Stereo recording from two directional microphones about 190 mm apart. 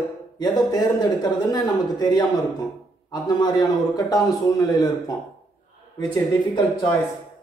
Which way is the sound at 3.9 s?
20° left (ahead or behind).